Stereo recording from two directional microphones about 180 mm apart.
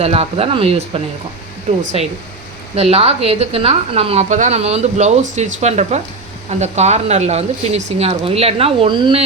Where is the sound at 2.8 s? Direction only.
35° right (ahead or behind).